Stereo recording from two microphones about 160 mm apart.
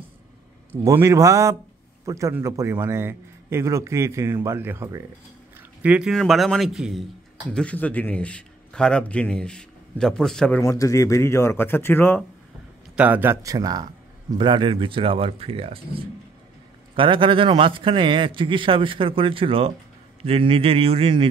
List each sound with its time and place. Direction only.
0.7 s a man's voice: 15° right (ahead or behind)
7.5 s a man's voice: 10° left (ahead or behind)
10.6 s speech: 20° left (ahead or behind)
12.9 s a man's voice: 10° right (ahead or behind); by 21.3 s 35° right (ahead or behind)